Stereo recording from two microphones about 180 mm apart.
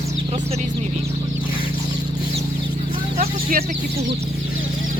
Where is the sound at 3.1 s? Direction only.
55° right (ahead or behind).